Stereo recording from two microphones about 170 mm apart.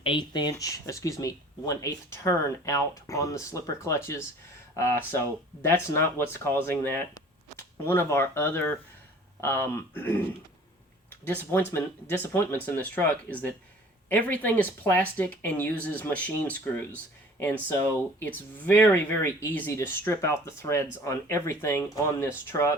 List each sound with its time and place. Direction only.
0.0 s speech: 30° left (ahead or behind); by 10.2 s 10° left (ahead or behind)
11.7 s speech: 15° left (ahead or behind)